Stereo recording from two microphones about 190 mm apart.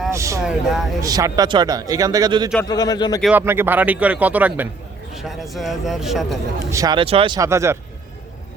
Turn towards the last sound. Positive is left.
turn(degrees=-15)  # may be behind; listen again after turning